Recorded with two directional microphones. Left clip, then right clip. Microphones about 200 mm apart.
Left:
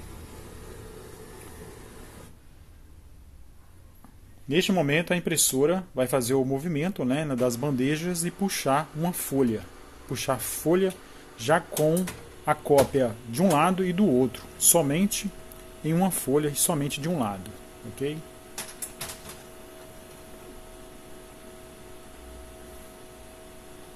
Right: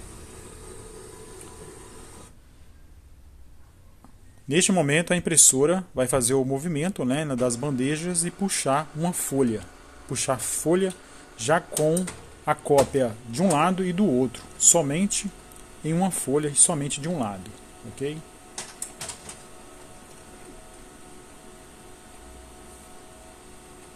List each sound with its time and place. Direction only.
4.5 s speech: 15° right (ahead or behind)